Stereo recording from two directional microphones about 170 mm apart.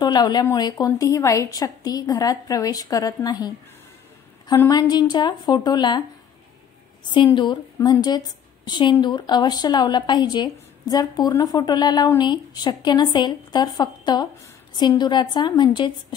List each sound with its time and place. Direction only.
0.0 s speech: 25° left (ahead or behind)
4.6 s speech: 20° left (ahead or behind)
7.3 s speech: 25° left (ahead or behind)